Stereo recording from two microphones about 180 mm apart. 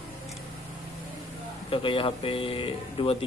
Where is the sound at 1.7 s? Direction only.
30° left (ahead or behind).